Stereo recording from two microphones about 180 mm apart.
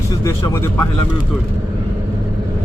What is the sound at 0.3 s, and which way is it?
Speech, 15° left (ahead or behind).